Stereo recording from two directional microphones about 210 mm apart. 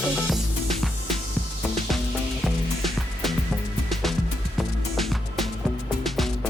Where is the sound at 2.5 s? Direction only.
Centre (ahead or behind).